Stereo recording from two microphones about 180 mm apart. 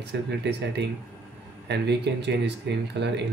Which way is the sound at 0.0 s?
70° right (ahead or behind).